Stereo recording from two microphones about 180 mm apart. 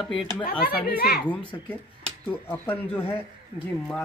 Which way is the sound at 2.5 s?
10° left (ahead or behind).